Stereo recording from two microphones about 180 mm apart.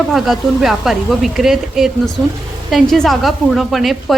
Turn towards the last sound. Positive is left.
turn(degrees=0)  # may be behind; listen again after turning